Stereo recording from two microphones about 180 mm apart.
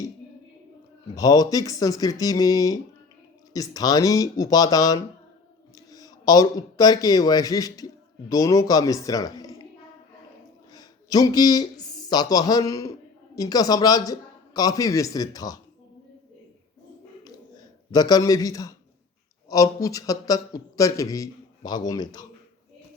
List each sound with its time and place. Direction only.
1.1 s a man's voice: 20° left (ahead or behind)
9.0 s a sound: 20° left (ahead or behind)
10.7 s a man's voice: 20° left (ahead or behind)
17.9 s a man's voice: 20° left (ahead or behind)